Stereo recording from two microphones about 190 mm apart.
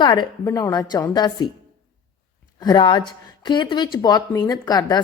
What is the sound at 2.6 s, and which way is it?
A woman's voice, 20° left (ahead or behind).